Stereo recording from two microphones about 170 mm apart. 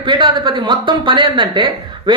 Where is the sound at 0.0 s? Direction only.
25° right (ahead or behind).